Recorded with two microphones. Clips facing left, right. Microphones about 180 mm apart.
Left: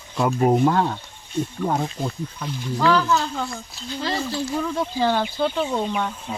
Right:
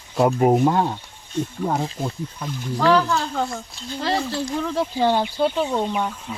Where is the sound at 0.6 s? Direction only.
15° right (ahead or behind).